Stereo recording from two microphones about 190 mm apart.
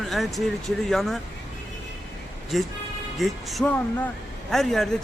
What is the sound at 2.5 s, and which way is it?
A man's voice, centre (ahead or behind).